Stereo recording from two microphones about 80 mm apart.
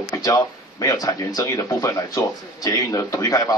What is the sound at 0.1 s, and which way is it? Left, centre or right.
Speech, left.